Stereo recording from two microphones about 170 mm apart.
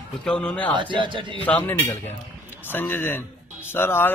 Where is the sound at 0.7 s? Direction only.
30° right (ahead or behind).